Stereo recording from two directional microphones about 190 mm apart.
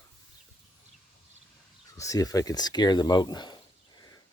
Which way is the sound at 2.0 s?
20° left (ahead or behind).